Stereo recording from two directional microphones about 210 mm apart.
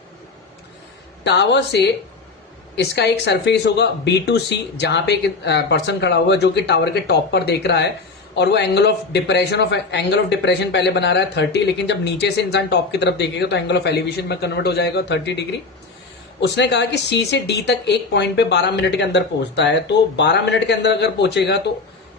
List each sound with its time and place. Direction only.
1.2 s a woman's voice: 55° left (ahead or behind)